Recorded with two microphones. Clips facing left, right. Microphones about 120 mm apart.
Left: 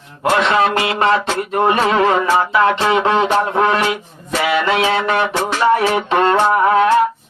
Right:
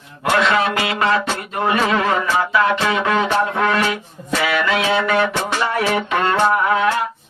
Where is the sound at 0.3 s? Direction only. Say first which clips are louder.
Left 2 dB; 30° left (ahead or behind).